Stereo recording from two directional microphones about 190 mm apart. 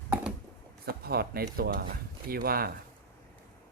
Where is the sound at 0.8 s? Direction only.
55° right (ahead or behind).